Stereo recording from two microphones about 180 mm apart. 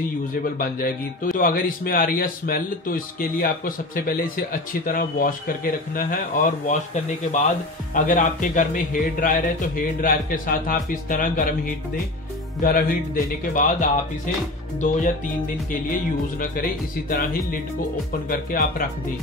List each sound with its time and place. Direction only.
0.4 s speech: 50° left (ahead or behind)
7.9 s speech: 45° left (ahead or behind)